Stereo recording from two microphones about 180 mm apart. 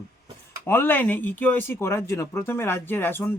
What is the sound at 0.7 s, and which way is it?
Speech, 10° left (ahead or behind).